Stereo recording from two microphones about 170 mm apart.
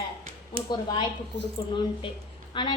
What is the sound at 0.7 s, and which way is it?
Speech, 25° left (ahead or behind).